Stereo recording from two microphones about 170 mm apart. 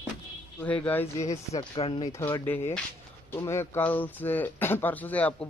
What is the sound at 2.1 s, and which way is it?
Speech, 15° left (ahead or behind).